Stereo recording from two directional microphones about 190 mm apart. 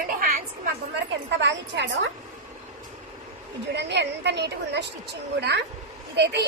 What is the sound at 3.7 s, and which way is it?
A woman's voice, 65° right (ahead or behind).